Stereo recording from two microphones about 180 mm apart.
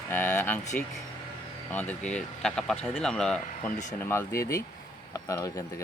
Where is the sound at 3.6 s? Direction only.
40° left (ahead or behind).